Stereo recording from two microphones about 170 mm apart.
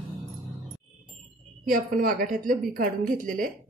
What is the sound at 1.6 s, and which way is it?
A woman's voice, 60° right (ahead or behind).